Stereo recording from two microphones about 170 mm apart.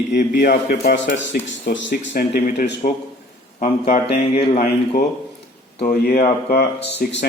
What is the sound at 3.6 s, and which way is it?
Speech, 45° left (ahead or behind).